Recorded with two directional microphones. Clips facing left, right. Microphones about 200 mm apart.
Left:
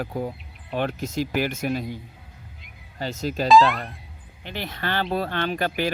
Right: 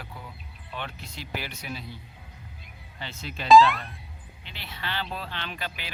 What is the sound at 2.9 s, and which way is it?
Speech, 40° left (ahead or behind).